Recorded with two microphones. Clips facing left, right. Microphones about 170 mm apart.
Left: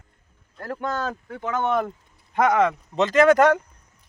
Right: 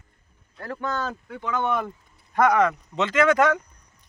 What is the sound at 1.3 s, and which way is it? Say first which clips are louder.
Speech: left 2 dB; 45° left (ahead or behind).